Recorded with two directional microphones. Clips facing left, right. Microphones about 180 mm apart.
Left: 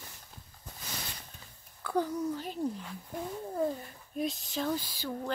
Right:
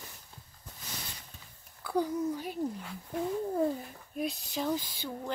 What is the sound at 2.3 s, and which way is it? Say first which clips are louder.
Speech: even; 15° right (ahead or behind).